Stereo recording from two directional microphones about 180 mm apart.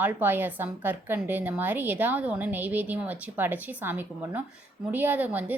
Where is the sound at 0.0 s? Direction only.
10° right (ahead or behind).